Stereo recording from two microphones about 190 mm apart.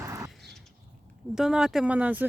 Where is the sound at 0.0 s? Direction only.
15° right (ahead or behind).